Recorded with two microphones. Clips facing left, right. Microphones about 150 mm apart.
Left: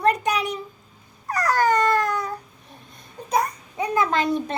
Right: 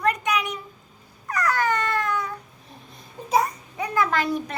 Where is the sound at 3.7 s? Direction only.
20° left (ahead or behind).